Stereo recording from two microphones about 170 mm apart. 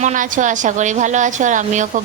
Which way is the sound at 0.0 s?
50° right (ahead or behind).